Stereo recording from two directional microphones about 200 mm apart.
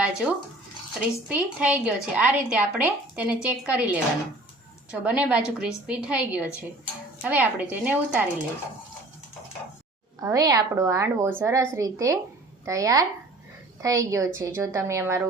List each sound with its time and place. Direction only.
0.0 s a woman's voice: 5° right (ahead or behind)
10.2 s a woman's voice: 15° right (ahead or behind)